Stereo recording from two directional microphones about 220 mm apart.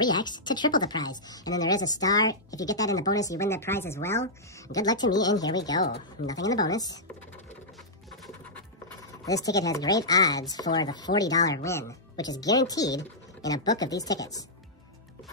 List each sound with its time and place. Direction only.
0.0 s a woman's voice: 20° left (ahead or behind)
8.8 s a woman's voice: 15° left (ahead or behind)